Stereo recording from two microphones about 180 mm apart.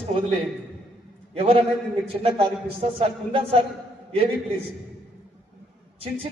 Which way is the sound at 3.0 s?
30° right (ahead or behind).